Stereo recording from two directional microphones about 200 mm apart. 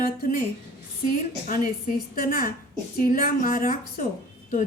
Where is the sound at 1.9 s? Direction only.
45° left (ahead or behind).